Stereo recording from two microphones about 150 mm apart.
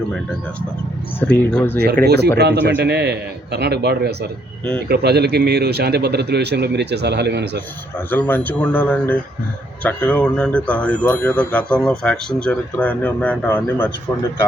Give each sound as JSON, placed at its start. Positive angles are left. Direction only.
{"t": 1.5, "sound": "speech", "side_deg": 10}
{"t": 2.0, "sound": "a man's voice", "side_deg": -90}
{"t": 7.9, "sound": "speech", "side_deg": 10}